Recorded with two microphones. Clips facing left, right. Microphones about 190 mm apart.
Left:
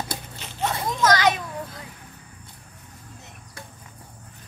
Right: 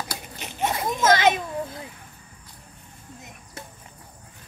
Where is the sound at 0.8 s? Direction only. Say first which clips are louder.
Right 1 dB; 25° right (ahead or behind).